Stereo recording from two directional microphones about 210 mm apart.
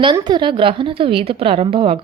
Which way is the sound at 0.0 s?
20° right (ahead or behind).